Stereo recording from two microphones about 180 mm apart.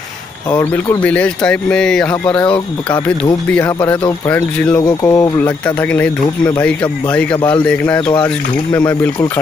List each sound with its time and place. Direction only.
0.5 s speech: 20° left (ahead or behind)
1.0 s speech: 5° left (ahead or behind)
3.5 s speech: 10° left (ahead or behind)